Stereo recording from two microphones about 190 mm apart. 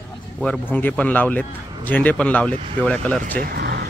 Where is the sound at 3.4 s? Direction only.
55° right (ahead or behind).